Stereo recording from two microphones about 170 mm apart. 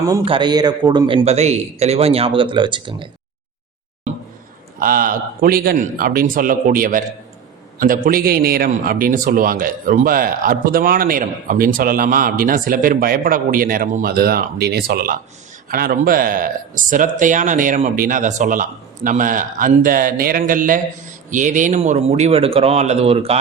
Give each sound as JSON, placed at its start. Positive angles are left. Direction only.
{"t": 0.3, "sound": "a man's voice", "side_deg": -25}
{"t": 4.8, "sound": "a man's voice", "side_deg": -55}